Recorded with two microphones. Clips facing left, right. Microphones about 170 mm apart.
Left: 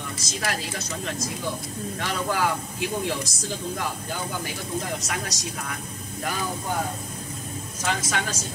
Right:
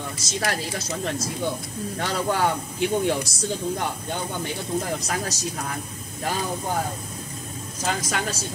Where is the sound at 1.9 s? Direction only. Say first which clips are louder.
Right 3 dB; 30° right (ahead or behind).